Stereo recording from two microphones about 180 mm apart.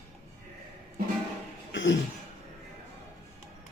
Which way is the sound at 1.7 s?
90° left.